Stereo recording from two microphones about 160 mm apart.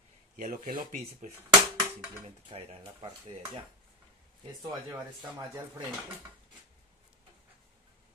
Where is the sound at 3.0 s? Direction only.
25° right (ahead or behind).